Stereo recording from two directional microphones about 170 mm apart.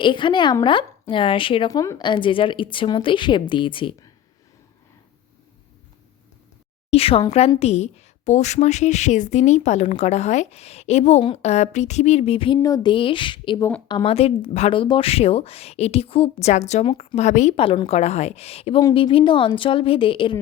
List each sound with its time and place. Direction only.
0.0 s a woman's voice: 30° left (ahead or behind)
1.7 s a woman's voice: 20° left (ahead or behind)
6.9 s a woman's voice: 35° left (ahead or behind)
12.5 s a woman's voice: 20° left (ahead or behind); by 16.8 s 45° left (ahead or behind)
16.8 s a woman's voice: 30° left (ahead or behind)
17.2 s a woman's voice: 45° left (ahead or behind)
18.8 s a woman's voice: 25° left (ahead or behind)